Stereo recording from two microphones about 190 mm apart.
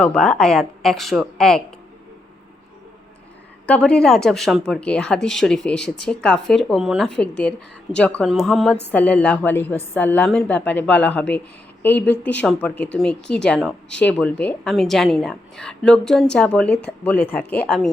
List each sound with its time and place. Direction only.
0.0 s a woman's voice: 5° left (ahead or behind)
3.7 s a woman's voice: 5° left (ahead or behind)